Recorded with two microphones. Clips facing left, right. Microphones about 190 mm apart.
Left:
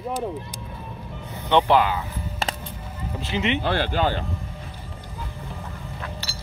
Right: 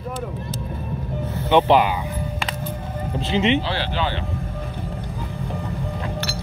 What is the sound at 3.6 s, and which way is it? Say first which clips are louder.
Speech: left 2 dB; 50° left (ahead or behind).